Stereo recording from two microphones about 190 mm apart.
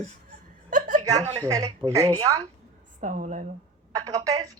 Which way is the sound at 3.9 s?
20° right (ahead or behind).